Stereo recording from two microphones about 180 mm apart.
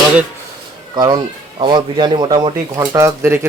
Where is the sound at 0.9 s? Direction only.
25° right (ahead or behind).